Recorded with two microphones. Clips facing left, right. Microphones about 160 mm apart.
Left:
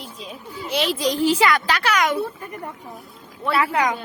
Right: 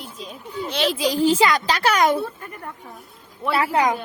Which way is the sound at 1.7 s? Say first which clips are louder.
Right 3 dB; 35° right (ahead or behind).